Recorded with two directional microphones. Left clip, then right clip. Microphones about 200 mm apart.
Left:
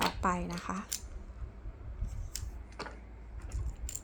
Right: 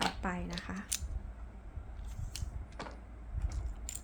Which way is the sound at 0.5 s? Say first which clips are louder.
Left 4 dB; 20° left (ahead or behind).